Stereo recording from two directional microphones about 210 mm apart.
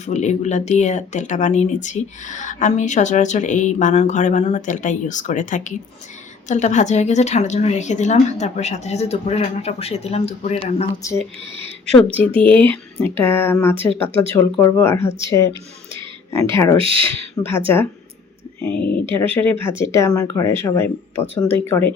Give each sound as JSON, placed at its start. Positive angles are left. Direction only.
{"t": 0.0, "sound": "speech", "side_deg": 35}
{"t": 11.0, "sound": "speech", "side_deg": 15}
{"t": 12.4, "sound": "speech", "side_deg": 10}
{"t": 13.7, "sound": "speech", "side_deg": -25}
{"t": 14.3, "sound": "speech", "side_deg": 10}
{"t": 16.7, "sound": "speech", "side_deg": -25}
{"t": 18.6, "sound": "speech", "side_deg": 5}